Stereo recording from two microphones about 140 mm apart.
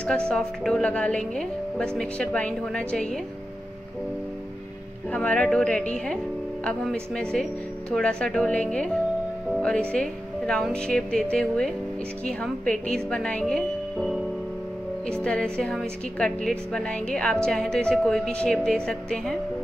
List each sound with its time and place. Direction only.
0.0 s a woman's voice: 5° left (ahead or behind)
5.1 s a woman's voice: 10° left (ahead or behind)
15.2 s a woman's voice: 5° left (ahead or behind)